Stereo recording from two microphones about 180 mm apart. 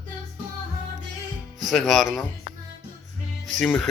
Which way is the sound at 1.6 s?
Centre (ahead or behind).